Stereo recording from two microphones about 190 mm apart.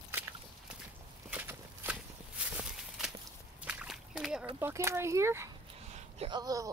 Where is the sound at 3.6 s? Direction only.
5° right (ahead or behind).